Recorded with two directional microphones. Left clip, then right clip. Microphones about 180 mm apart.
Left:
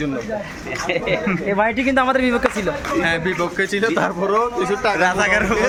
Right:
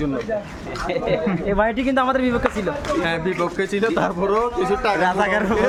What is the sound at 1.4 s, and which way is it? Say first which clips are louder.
Speech: left 2 dB; 5° left (ahead or behind).